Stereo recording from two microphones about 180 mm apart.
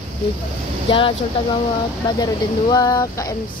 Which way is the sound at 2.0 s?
20° left (ahead or behind).